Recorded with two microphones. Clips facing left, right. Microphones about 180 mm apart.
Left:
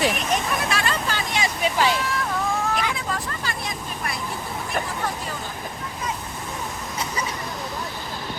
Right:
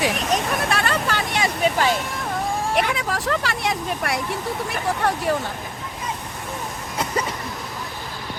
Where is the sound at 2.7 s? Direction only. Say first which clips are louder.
Right 4 dB; 75° right (ahead or behind).